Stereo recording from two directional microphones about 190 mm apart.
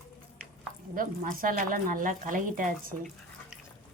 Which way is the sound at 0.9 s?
50° right (ahead or behind).